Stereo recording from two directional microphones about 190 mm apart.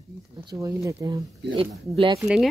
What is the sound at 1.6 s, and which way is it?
Speech, 30° right (ahead or behind).